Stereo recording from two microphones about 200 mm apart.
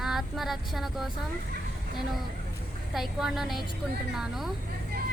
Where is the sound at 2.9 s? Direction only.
Centre (ahead or behind).